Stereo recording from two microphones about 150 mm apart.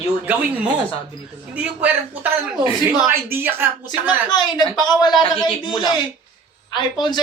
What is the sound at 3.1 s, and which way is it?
Speech, 15° right (ahead or behind).